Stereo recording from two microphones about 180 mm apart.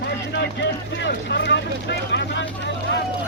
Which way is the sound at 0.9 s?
80° left.